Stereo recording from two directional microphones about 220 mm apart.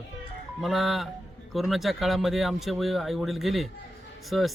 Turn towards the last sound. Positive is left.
turn(degrees=0)  # may be behind; listen again after turning